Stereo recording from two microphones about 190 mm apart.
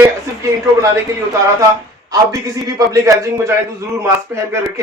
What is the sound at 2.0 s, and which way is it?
A man's voice, 20° right (ahead or behind).